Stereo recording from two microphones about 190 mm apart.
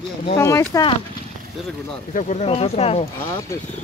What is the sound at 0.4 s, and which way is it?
Speech, 15° left (ahead or behind).